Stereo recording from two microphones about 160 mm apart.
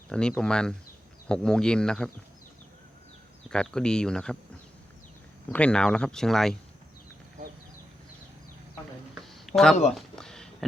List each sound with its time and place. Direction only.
0.1 s speech: 5° left (ahead or behind)
3.5 s speech: 5° left (ahead or behind)
5.5 s speech: 5° left (ahead or behind)
7.4 s a sound: 55° right (ahead or behind)
9.5 s speech: 40° left (ahead or behind)
9.9 s a sound: 5° left (ahead or behind)